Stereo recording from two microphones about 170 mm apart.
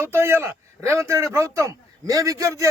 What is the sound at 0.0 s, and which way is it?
A man's voice, 15° right (ahead or behind).